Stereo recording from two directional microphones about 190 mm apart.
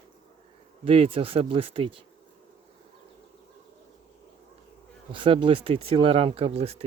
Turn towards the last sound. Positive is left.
turn(degrees=-30)  # may be behind; listen again after turning